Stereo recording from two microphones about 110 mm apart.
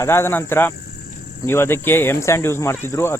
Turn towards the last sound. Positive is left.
turn(degrees=25)  # may be behind; listen again after turning